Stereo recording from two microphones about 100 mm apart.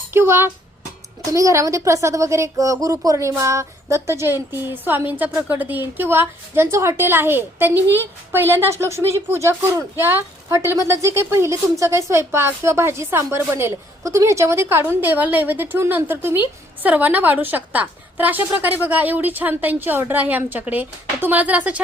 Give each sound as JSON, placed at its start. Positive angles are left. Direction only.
{"t": 0.1, "sound": "a woman's voice", "side_deg": -25}